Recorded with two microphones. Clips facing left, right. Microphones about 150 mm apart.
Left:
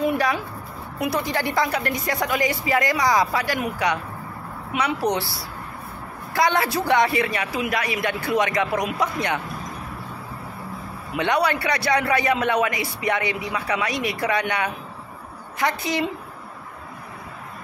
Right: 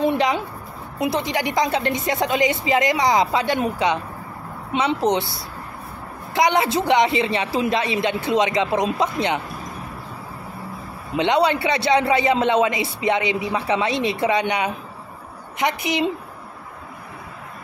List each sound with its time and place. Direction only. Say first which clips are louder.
0.0 s a sound: right 2 dB; 25° right (ahead or behind)
0.9 s a man's voice: right 2 dB; 20° right (ahead or behind)
11.1 s a man's voice: right 3 dB; 20° right (ahead or behind)